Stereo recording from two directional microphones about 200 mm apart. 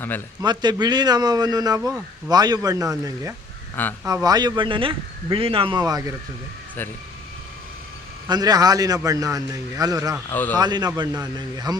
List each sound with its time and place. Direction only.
0.4 s a man's voice: 20° right (ahead or behind)
8.3 s a man's voice: 20° right (ahead or behind)
10.2 s speech: 10° left (ahead or behind)
10.6 s speech: 20° right (ahead or behind)